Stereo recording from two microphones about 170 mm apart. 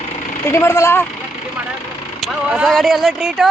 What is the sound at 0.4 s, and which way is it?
Speech, 15° left (ahead or behind).